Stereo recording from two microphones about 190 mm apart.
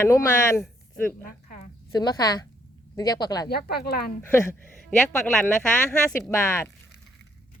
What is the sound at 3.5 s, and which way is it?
Speech, 55° left (ahead or behind).